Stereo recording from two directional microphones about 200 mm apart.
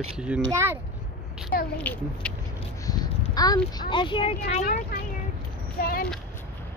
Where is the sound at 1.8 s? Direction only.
5° left (ahead or behind).